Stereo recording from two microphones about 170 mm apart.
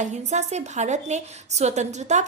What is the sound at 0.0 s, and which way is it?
A woman's voice, 45° right (ahead or behind).